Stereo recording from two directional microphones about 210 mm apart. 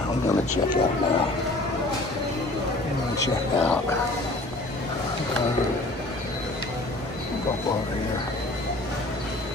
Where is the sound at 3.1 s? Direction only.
10° left (ahead or behind).